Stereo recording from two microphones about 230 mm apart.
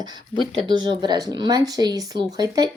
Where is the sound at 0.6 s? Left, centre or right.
Centre.